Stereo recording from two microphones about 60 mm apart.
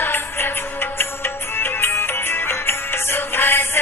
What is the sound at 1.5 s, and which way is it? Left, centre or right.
Music, left.